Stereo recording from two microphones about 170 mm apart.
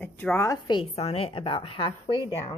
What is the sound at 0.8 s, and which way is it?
A woman's voice, 35° left (ahead or behind).